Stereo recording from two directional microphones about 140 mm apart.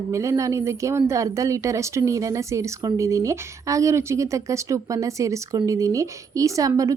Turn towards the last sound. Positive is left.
turn(degrees=-25)  # may be behind; listen again after turning